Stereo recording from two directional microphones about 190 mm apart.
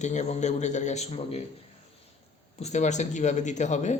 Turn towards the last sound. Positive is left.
turn(degrees=40)  # may be behind; listen again after turning